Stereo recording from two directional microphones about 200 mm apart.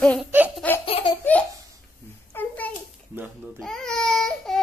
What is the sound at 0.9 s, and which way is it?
Laughter, 30° left (ahead or behind).